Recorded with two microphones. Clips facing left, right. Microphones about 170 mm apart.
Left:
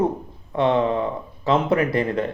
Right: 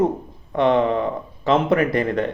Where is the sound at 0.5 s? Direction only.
60° right (ahead or behind).